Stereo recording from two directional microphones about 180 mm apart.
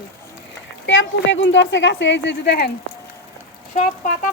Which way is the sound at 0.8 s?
90° left.